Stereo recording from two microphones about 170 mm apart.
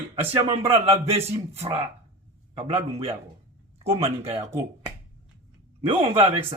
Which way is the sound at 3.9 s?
15° right (ahead or behind).